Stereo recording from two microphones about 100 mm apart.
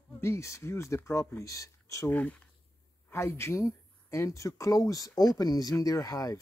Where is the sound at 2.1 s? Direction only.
15° left (ahead or behind).